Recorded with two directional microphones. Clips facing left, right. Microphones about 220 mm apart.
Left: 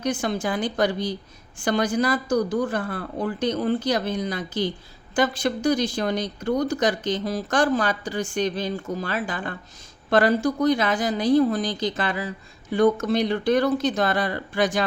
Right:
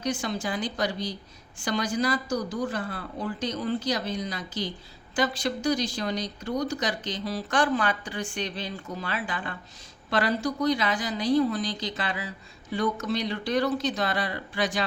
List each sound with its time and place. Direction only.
0.0 s speech: 55° left (ahead or behind)